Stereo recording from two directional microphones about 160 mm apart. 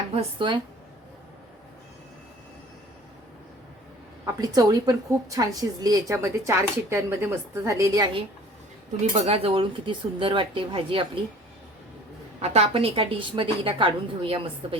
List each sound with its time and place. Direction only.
0.2 s a woman's voice: 30° right (ahead or behind)
4.4 s a woman's voice: 25° right (ahead or behind)
9.2 s a woman's voice: 35° right (ahead or behind)
12.4 s a woman's voice: 40° right (ahead or behind)